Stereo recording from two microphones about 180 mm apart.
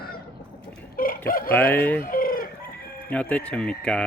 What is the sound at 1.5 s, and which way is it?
Speech, 10° left (ahead or behind).